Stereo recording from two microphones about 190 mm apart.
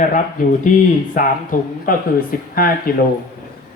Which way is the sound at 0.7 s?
45° left (ahead or behind).